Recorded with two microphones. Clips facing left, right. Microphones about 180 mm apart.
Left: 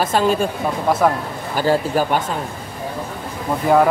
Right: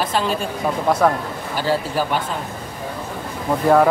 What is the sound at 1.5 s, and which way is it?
Mantra, 50° left (ahead or behind).